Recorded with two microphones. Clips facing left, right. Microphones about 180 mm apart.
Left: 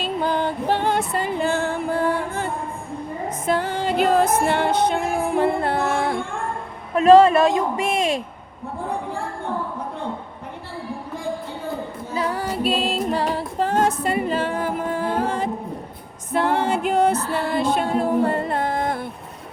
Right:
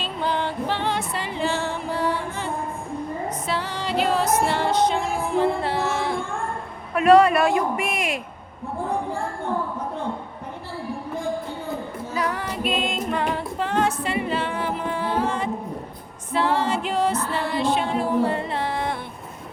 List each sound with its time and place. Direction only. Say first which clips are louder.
0.2 s music: left 1 dB; 45° left (ahead or behind)
6.9 s a woman's voice: left 3 dB; 25° left (ahead or behind)
12.1 s music: left 3 dB; 30° left (ahead or behind); by 18.9 s 45° left (ahead or behind)